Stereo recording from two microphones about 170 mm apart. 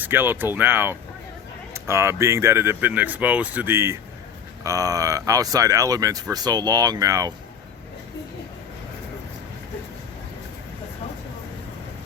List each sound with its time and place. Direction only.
0.0 s speech: 10° right (ahead or behind)